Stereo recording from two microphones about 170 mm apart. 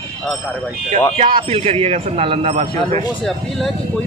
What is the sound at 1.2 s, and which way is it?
A man's voice, 35° right (ahead or behind).